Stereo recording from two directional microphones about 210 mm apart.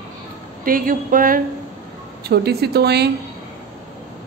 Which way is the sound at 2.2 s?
50° right (ahead or behind).